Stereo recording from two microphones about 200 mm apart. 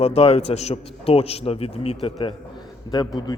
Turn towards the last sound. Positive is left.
turn(degrees=20)  # may be behind; listen again after turning